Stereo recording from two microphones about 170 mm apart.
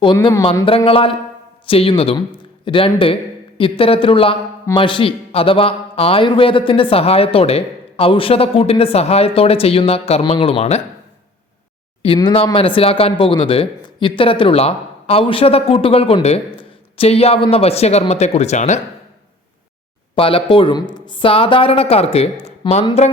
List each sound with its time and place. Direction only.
0.0 s speech: 25° left (ahead or behind)
0.9 s speech: 35° left (ahead or behind)
12.0 s speech: 30° left (ahead or behind)
20.1 s speech: 30° left (ahead or behind)